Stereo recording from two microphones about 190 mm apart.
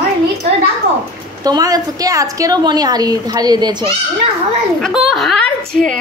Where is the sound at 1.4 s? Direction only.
20° right (ahead or behind).